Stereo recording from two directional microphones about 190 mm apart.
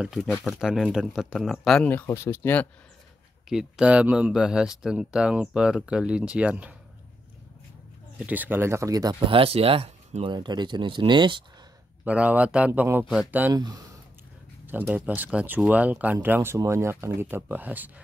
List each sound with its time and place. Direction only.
0.0 s speech: centre (ahead or behind)
3.4 s speech: 5° right (ahead or behind)
8.2 s speech: 10° right (ahead or behind); by 11.4 s 25° right (ahead or behind)
12.0 s speech: 5° right (ahead or behind)
14.7 s speech: 10° right (ahead or behind)